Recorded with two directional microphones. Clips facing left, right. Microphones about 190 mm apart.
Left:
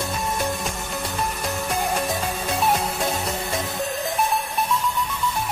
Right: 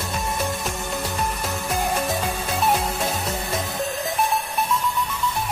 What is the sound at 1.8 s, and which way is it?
Music, centre (ahead or behind).